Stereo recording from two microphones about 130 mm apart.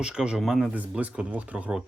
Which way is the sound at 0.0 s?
5° right (ahead or behind).